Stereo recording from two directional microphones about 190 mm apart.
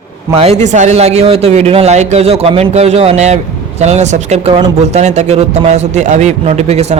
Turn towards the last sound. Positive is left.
turn(degrees=-35)  # may be behind; listen again after turning